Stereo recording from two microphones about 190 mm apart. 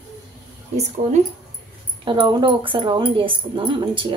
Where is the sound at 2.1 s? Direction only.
25° right (ahead or behind).